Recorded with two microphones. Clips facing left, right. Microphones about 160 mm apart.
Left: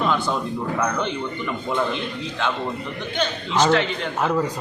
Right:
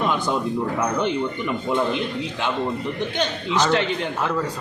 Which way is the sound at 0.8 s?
10° right (ahead or behind).